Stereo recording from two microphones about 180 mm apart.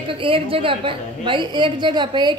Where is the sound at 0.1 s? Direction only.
30° right (ahead or behind).